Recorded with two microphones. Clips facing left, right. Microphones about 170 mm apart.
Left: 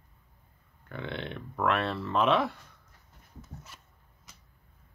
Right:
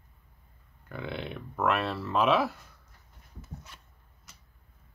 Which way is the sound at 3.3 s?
5° left (ahead or behind).